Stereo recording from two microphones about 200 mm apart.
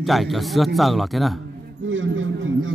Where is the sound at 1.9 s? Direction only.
75° right (ahead or behind).